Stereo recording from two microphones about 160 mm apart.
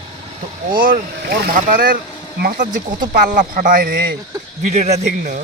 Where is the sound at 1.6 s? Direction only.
60° right (ahead or behind).